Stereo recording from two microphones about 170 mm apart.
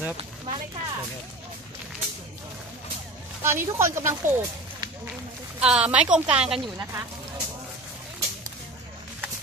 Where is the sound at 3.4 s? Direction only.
15° right (ahead or behind).